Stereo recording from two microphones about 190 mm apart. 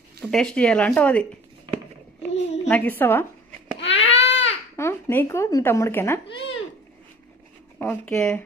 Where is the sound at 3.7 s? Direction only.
70° left (ahead or behind).